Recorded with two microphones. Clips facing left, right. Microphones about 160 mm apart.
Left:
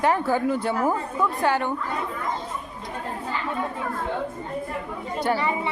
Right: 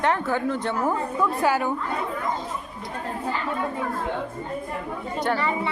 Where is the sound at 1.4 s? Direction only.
5° right (ahead or behind).